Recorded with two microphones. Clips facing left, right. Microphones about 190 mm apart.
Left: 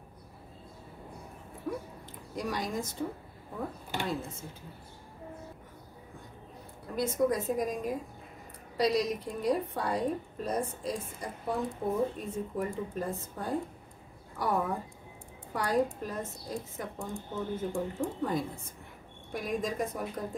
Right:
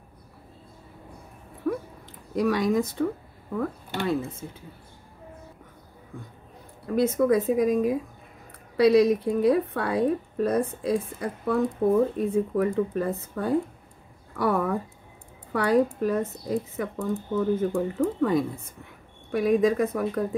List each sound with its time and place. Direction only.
1.6 s a sound: 60° right (ahead or behind)
2.3 s speech: 60° right (ahead or behind)
7.0 s speech: 60° right (ahead or behind)